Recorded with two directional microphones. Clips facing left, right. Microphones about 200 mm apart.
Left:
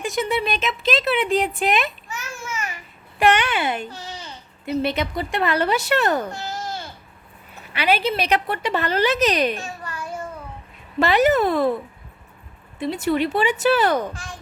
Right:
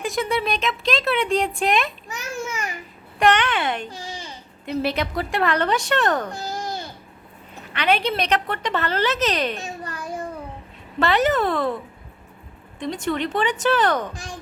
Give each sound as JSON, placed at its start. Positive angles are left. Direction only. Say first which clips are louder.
{"t": 0.0, "sound": "speech", "louder": "even", "side_deg": 0}
{"t": 2.0, "sound": "babbling", "louder": "right 3 dB", "side_deg": -15}
{"t": 3.2, "sound": "a woman's voice", "louder": "even", "side_deg": 10}
{"t": 3.8, "sound": "a child's voice", "louder": "even", "side_deg": -10}
{"t": 4.6, "sound": "speech", "louder": "left 1 dB", "side_deg": 0}
{"t": 6.3, "sound": "babbling", "louder": "right 1 dB", "side_deg": -15}
{"t": 7.7, "sound": "a woman's voice", "louder": "left 1 dB", "side_deg": 5}
{"t": 9.8, "sound": "a sound", "louder": "right 1 dB", "side_deg": -15}
{"t": 11.0, "sound": "a woman's voice", "louder": "left 2 dB", "side_deg": 10}
{"t": 12.8, "sound": "a woman's voice", "louder": "left 3 dB", "side_deg": 5}